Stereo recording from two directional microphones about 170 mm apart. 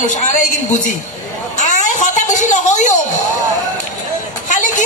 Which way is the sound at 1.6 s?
45° left (ahead or behind).